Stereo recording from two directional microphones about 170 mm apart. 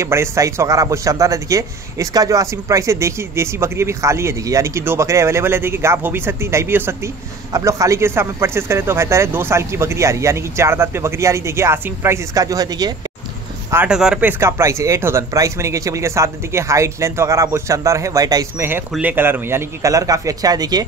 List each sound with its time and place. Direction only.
0.0 s a man's voice: 15° right (ahead or behind)
13.7 s speech: 10° right (ahead or behind)
14.4 s a man's voice: 15° right (ahead or behind)